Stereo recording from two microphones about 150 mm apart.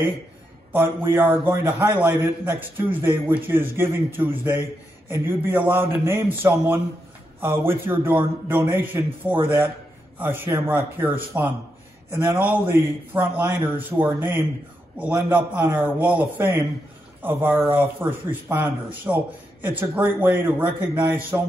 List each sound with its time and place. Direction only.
0.7 s a man's voice: 15° right (ahead or behind)
15.0 s a man's voice: 10° right (ahead or behind)